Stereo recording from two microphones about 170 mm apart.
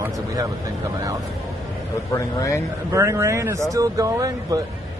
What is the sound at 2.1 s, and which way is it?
Speech, 20° left (ahead or behind).